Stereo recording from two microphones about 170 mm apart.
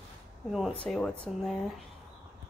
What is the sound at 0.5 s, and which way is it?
Speech, centre (ahead or behind).